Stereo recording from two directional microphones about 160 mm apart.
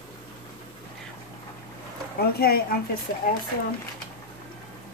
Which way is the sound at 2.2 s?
75° left (ahead or behind).